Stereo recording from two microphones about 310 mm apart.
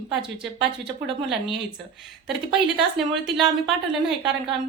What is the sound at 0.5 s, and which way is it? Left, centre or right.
Speech, centre.